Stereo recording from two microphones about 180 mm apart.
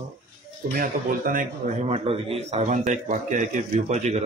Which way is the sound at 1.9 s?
35° right (ahead or behind).